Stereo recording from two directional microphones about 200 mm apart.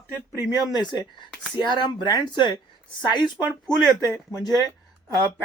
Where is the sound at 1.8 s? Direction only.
20° left (ahead or behind).